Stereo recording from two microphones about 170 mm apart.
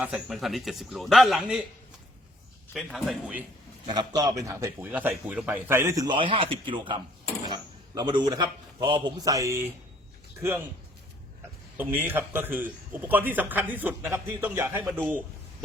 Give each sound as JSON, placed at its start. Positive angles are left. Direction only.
{"t": 0.0, "sound": "a man's voice", "side_deg": 0}
{"t": 2.7, "sound": "a man's voice", "side_deg": 0}
{"t": 3.8, "sound": "a man's voice", "side_deg": -25}
{"t": 11.8, "sound": "a man's voice", "side_deg": -10}